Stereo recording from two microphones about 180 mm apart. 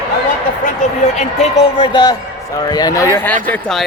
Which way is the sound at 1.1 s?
35° left (ahead or behind).